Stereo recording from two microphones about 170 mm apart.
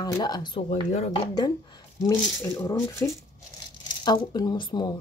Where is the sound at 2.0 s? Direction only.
20° left (ahead or behind).